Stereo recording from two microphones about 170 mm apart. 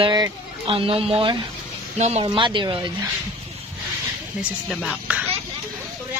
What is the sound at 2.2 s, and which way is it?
Speech, 30° right (ahead or behind).